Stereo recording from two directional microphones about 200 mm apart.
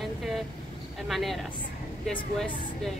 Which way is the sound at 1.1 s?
Centre (ahead or behind).